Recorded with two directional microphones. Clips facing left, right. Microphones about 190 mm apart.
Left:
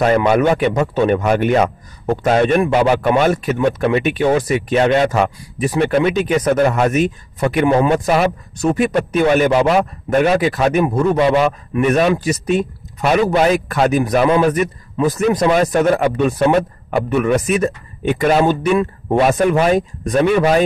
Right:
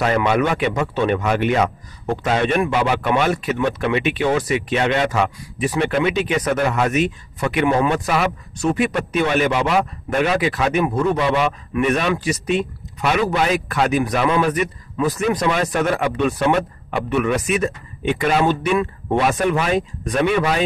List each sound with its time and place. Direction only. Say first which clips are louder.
0.1 s speech: left 5 dB; 40° left (ahead or behind)